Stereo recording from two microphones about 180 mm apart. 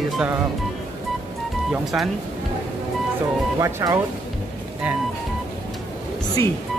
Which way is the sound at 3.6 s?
20° right (ahead or behind).